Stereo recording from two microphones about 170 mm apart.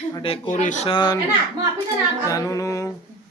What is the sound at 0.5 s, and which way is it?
Speech, 45° left (ahead or behind).